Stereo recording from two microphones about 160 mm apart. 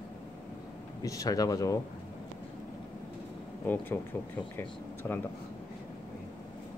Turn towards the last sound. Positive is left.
turn(degrees=15)  # may be behind; listen again after turning